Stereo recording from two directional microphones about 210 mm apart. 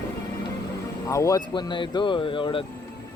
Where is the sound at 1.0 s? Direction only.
15° left (ahead or behind).